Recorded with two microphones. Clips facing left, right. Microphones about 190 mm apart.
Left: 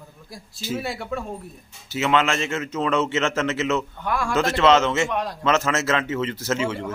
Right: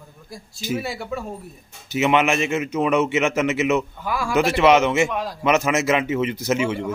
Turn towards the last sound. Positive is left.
turn(degrees=-15)  # may be behind; listen again after turning